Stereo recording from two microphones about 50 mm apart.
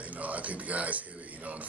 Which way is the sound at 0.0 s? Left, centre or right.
Right.